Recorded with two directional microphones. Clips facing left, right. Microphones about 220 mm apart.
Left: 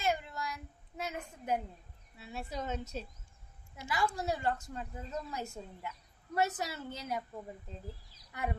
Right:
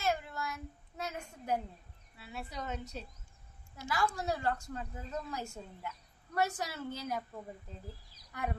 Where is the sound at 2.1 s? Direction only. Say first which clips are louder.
Left 3 dB; 25° left (ahead or behind).